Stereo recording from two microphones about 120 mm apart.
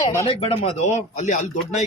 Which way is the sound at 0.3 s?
55° left (ahead or behind).